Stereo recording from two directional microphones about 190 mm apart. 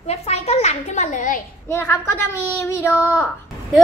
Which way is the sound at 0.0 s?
35° left (ahead or behind).